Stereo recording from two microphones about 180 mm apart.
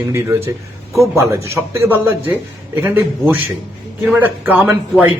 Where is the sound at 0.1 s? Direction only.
15° right (ahead or behind).